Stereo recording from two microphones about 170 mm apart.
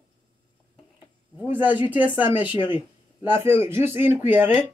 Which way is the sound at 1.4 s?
10° right (ahead or behind).